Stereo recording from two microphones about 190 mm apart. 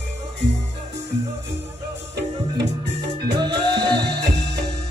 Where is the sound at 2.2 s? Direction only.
65° right (ahead or behind).